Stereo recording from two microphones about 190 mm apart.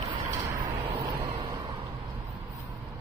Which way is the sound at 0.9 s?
25° right (ahead or behind).